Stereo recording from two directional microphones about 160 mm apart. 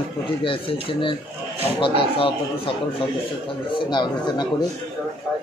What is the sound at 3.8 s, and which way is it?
Speech, 30° left (ahead or behind).